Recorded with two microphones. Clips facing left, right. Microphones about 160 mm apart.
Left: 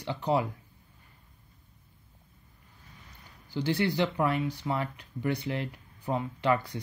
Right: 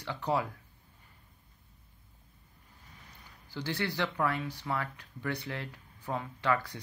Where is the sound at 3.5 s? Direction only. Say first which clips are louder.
Left 7 dB; 20° left (ahead or behind).